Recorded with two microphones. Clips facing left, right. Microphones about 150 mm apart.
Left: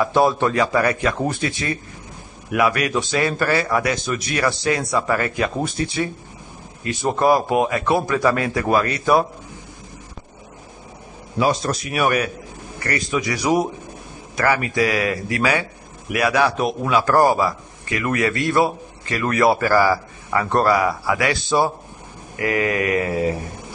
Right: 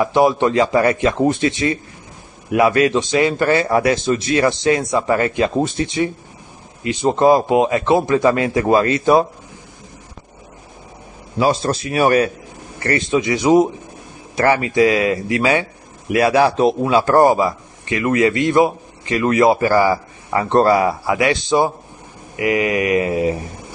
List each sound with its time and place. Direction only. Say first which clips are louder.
0.0 s a man's voice: right 3 dB; 15° right (ahead or behind)
11.3 s a man's voice: right 3 dB; 30° right (ahead or behind)